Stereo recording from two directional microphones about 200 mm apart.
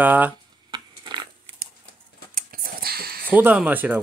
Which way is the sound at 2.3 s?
45° right (ahead or behind).